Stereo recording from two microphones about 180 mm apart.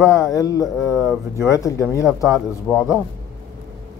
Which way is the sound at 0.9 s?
5° right (ahead or behind).